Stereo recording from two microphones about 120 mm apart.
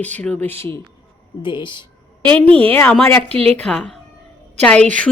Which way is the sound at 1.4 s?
40° left (ahead or behind).